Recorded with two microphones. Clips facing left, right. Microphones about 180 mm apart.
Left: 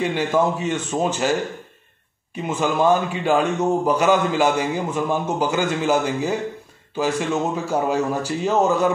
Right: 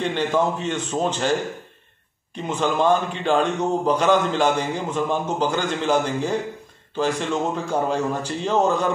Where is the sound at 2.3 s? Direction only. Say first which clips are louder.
Left 1 dB; 10° left (ahead or behind).